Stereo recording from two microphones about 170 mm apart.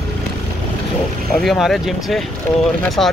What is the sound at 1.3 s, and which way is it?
Speech, centre (ahead or behind).